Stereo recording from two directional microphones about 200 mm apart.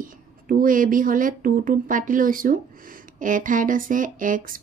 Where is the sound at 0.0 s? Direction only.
45° right (ahead or behind).